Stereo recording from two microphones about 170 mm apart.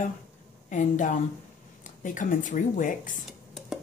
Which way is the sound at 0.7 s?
50° left (ahead or behind).